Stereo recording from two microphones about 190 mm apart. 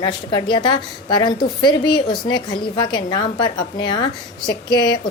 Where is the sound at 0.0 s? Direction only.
25° left (ahead or behind).